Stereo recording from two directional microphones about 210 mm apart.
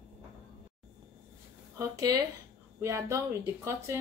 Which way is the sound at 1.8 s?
15° right (ahead or behind).